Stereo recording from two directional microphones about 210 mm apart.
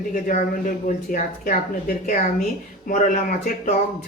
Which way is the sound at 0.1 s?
35° left (ahead or behind).